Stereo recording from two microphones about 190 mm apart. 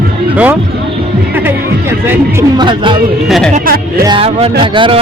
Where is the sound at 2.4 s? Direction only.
25° right (ahead or behind).